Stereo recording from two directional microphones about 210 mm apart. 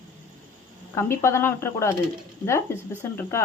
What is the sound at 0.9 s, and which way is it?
A woman's voice, 10° left (ahead or behind).